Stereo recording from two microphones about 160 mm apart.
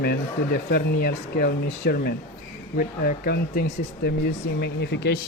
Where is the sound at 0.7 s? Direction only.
75° left (ahead or behind).